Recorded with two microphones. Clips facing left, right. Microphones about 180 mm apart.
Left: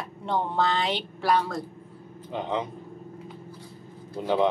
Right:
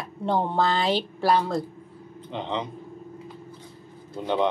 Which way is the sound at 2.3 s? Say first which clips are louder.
Left 1 dB; 5° left (ahead or behind).